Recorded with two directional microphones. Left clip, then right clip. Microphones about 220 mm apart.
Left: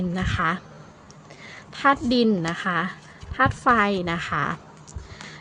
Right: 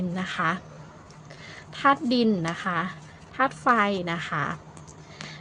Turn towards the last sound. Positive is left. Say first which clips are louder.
# left 3 dB
turn(degrees=15)  # may be behind; listen again after turning